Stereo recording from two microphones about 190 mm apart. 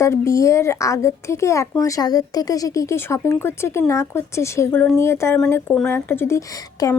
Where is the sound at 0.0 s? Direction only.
15° left (ahead or behind).